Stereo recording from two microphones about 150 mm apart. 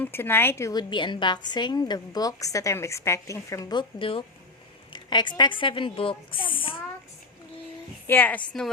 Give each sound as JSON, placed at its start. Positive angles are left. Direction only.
{"t": 0.0, "sound": "a woman's voice", "side_deg": 15}
{"t": 4.9, "sound": "a sound", "side_deg": 30}
{"t": 5.4, "sound": "a woman's voice", "side_deg": 35}
{"t": 8.0, "sound": "a woman's voice", "side_deg": 10}